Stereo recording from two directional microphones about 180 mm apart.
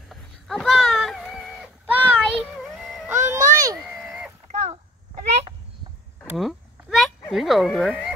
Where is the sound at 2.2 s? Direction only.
Centre (ahead or behind).